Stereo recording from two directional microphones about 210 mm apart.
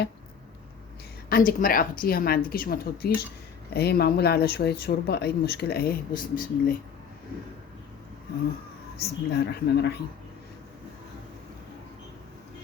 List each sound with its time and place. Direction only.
1.3 s speech: 40° left (ahead or behind)
9.0 s speech: 50° left (ahead or behind)